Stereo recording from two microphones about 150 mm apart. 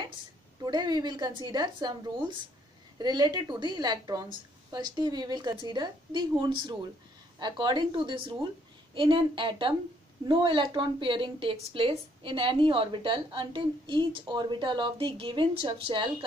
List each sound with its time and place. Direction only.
0.7 s a woman's voice: 30° right (ahead or behind)